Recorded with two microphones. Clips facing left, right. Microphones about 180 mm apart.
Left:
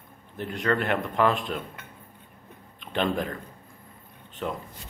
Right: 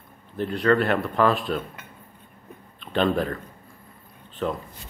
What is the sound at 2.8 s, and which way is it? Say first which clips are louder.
Speech: right 4 dB; 15° left (ahead or behind).